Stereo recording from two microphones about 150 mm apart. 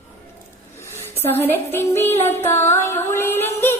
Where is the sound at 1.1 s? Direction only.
15° left (ahead or behind).